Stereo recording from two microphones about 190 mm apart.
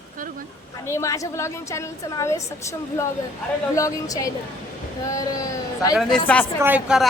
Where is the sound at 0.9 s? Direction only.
15° left (ahead or behind).